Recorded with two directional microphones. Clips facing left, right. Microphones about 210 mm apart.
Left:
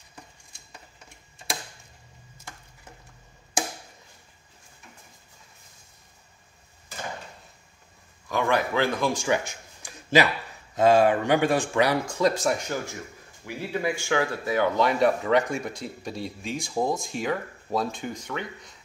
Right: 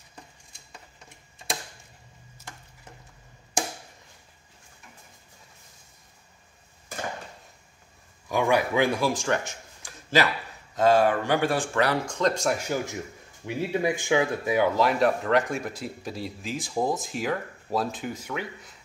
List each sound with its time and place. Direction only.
8.3 s speech: 15° right (ahead or behind)
9.1 s a sound: 5° left (ahead or behind)
10.8 s speech: 15° left (ahead or behind); by 12.7 s 5° right (ahead or behind)
13.5 s speech: 20° right (ahead or behind)
14.8 s speech: centre (ahead or behind)